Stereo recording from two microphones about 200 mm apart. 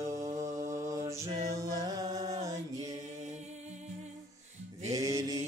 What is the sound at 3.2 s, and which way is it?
Music, 35° right (ahead or behind).